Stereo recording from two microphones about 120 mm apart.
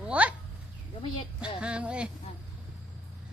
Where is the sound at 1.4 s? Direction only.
10° right (ahead or behind).